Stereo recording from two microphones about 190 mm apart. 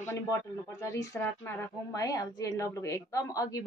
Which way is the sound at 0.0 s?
15° left (ahead or behind).